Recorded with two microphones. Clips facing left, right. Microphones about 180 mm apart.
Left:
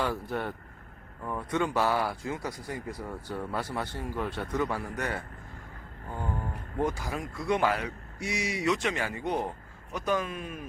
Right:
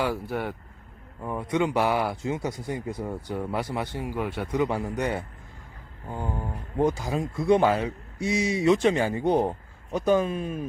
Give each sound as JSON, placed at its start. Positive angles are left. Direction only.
{"t": 0.0, "sound": "speech", "side_deg": -10}